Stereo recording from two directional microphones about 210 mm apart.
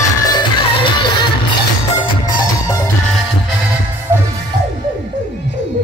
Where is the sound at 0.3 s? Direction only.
20° left (ahead or behind).